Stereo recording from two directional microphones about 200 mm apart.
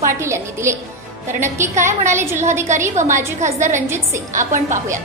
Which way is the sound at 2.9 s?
40° right (ahead or behind).